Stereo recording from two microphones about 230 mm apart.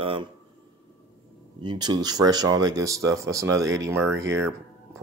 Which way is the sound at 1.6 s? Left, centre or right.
Centre.